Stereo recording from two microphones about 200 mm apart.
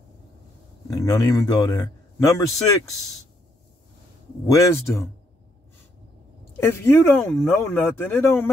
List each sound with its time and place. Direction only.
0.8 s a man's voice: 15° left (ahead or behind)
4.5 s a man's voice: 15° left (ahead or behind)
6.5 s a man's voice: 10° left (ahead or behind)